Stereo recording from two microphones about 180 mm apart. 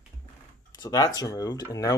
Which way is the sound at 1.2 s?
20° left (ahead or behind).